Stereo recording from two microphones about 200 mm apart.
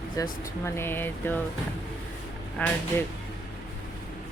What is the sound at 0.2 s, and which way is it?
Speech, 10° left (ahead or behind).